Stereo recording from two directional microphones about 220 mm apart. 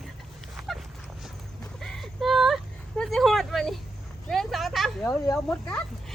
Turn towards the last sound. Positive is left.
turn(degrees=10)  # may be behind; listen again after turning